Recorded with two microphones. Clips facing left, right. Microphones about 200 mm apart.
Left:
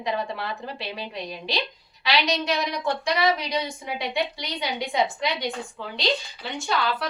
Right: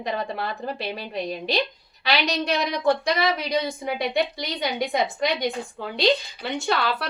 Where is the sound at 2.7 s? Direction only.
60° right (ahead or behind).